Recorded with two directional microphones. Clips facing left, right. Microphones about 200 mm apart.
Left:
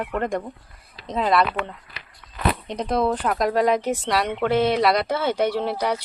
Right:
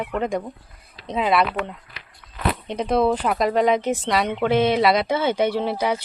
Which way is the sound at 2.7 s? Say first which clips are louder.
Right 5 dB; 5° right (ahead or behind).